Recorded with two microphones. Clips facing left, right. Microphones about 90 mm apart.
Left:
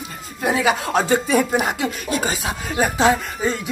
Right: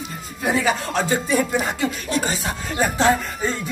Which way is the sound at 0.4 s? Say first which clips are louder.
Left 2 dB; 5° left (ahead or behind).